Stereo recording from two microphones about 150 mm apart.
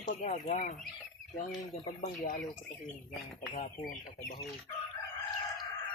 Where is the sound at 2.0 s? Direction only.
65° left (ahead or behind).